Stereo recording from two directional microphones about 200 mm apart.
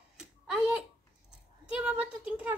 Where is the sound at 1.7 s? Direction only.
5° right (ahead or behind).